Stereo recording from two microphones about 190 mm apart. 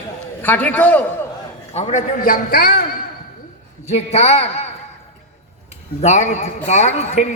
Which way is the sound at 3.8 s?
35° left (ahead or behind).